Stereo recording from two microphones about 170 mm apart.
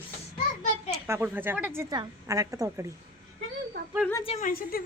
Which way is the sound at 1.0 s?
15° right (ahead or behind).